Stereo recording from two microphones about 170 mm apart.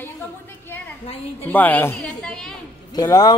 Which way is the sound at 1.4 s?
10° left (ahead or behind).